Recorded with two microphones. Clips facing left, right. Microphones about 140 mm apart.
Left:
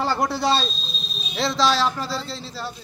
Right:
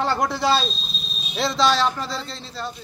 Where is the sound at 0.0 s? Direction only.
Centre (ahead or behind).